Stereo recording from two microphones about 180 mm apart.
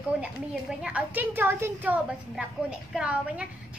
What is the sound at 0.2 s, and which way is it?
A woman's voice, 5° right (ahead or behind).